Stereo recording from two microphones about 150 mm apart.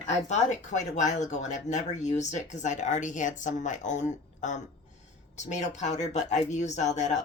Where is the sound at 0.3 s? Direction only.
55° left (ahead or behind).